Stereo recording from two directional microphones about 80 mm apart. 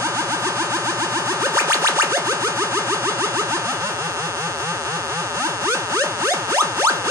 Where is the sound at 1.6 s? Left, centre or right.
Right.